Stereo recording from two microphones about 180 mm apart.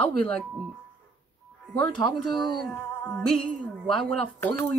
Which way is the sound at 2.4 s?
25° left (ahead or behind).